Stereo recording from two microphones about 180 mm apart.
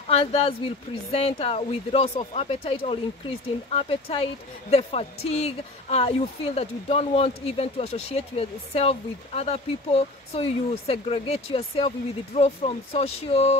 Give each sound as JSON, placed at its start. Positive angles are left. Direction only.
{"t": 0.1, "sound": "a woman's voice", "side_deg": 35}